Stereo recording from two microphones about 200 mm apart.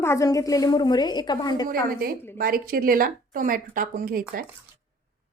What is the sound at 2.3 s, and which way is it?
Dishes, 45° right (ahead or behind).